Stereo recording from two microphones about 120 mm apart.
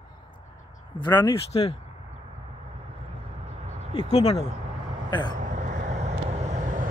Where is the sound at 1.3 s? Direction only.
50° left (ahead or behind).